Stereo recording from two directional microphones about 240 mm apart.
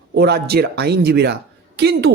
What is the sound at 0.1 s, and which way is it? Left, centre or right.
A man's voice, right.